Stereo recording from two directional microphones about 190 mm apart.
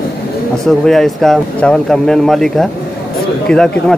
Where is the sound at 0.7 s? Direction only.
Centre (ahead or behind).